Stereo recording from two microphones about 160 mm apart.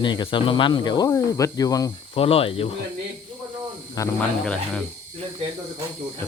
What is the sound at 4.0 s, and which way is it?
Speech, 20° left (ahead or behind).